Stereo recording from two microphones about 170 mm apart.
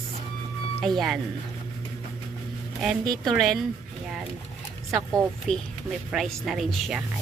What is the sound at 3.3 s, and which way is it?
Speech, centre (ahead or behind).